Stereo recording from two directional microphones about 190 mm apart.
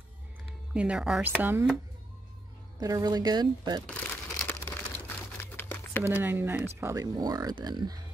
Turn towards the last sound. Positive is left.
turn(degrees=-20)  # may be behind; listen again after turning